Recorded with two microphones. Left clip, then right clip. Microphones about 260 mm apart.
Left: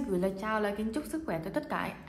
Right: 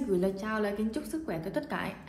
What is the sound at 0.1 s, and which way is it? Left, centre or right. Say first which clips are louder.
A woman's voice: even; left.